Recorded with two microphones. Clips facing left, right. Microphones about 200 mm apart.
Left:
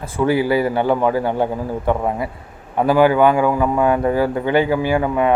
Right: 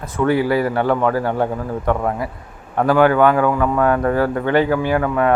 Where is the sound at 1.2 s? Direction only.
Centre (ahead or behind).